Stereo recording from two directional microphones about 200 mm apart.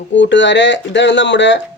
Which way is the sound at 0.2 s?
65° left (ahead or behind).